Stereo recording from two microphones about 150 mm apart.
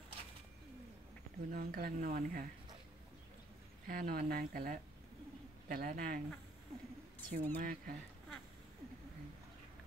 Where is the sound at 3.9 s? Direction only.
75° right (ahead or behind).